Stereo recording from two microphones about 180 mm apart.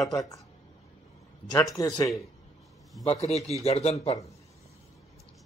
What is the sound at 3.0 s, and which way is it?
Speech, 35° left (ahead or behind).